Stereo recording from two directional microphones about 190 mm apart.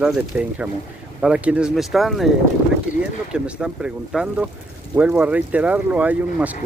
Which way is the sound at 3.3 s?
5° right (ahead or behind).